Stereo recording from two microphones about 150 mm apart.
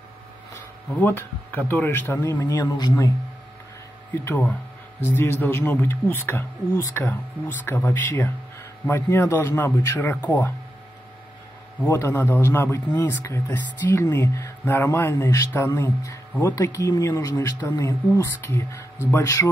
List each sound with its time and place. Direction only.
0.9 s speech: 15° left (ahead or behind)
4.2 s speech: 15° left (ahead or behind)
11.8 s speech: 15° left (ahead or behind)